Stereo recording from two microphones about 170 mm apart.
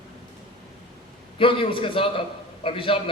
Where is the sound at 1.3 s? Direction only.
30° left (ahead or behind).